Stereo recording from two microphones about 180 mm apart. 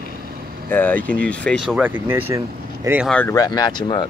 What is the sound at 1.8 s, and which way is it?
Speech, 10° right (ahead or behind).